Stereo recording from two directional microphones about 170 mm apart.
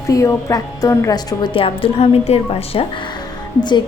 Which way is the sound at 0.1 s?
20° left (ahead or behind).